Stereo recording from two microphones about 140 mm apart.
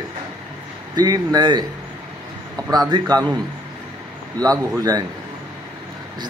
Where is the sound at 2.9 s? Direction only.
30° right (ahead or behind).